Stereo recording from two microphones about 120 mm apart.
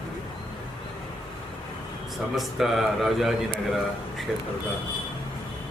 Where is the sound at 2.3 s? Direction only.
Centre (ahead or behind).